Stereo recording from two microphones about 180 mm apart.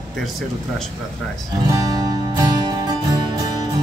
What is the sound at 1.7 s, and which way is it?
Music, 20° right (ahead or behind).